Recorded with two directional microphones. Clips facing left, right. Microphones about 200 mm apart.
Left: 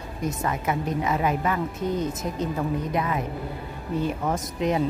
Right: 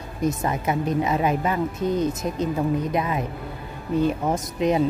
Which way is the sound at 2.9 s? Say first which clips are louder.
Right 2 dB; 20° right (ahead or behind).